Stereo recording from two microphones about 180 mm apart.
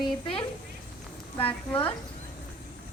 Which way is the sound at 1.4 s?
30° left (ahead or behind).